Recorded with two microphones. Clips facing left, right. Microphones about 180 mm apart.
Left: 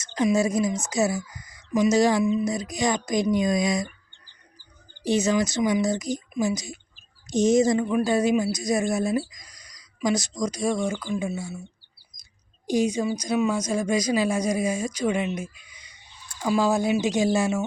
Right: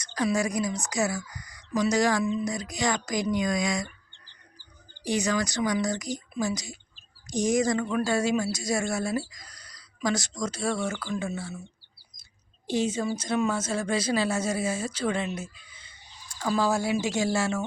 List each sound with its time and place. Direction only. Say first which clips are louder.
0.0 s speech: left 5 dB; 20° left (ahead or behind)
5.0 s speech: left 5 dB; 20° left (ahead or behind)
12.9 s speech: left 3 dB; 10° left (ahead or behind)